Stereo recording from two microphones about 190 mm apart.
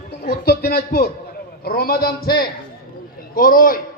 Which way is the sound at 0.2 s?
55° left (ahead or behind).